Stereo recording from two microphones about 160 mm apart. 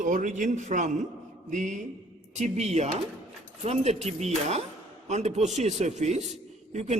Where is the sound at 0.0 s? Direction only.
55° right (ahead or behind).